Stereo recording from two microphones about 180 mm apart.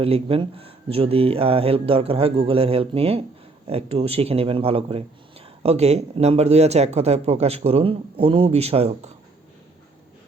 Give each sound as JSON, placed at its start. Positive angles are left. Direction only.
{"t": 0.0, "sound": "speech", "side_deg": -30}